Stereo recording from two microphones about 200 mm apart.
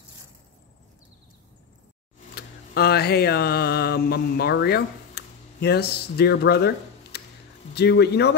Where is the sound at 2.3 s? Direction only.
50° left (ahead or behind).